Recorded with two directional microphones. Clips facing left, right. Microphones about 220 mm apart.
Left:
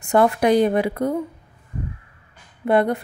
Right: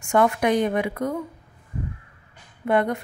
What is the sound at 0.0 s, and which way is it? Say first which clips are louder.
A woman's voice: left 3 dB; 35° left (ahead or behind).